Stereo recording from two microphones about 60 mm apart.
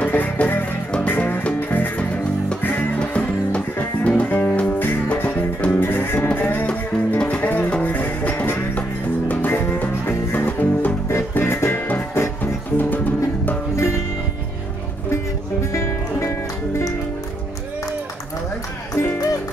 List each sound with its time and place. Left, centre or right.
0.0 s music: left
3.0 s music: left
11.1 s music: left
15.7 s music: left